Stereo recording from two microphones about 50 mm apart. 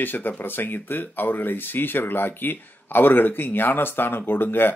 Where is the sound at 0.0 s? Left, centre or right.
Left.